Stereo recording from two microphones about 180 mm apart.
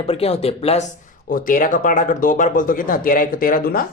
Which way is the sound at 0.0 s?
35° left (ahead or behind).